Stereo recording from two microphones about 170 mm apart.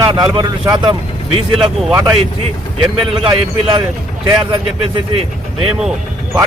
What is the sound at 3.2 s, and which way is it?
Speech, 30° right (ahead or behind).